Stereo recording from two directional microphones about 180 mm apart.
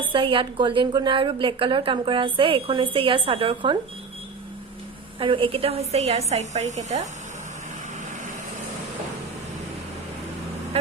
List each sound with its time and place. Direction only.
0.1 s a woman's voice: 30° right (ahead or behind)
5.2 s a woman's voice: 30° right (ahead or behind)